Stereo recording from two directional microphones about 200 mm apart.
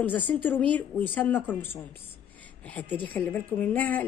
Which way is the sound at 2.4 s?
5° left (ahead or behind).